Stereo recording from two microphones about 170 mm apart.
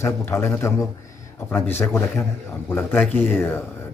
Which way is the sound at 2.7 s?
10° left (ahead or behind).